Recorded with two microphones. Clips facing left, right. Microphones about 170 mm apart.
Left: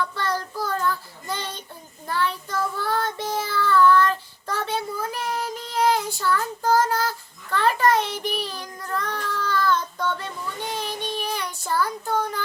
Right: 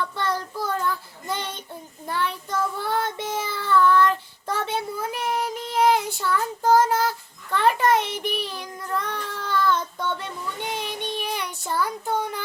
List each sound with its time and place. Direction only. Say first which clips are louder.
0.2 s child singing: even; 20° right (ahead or behind)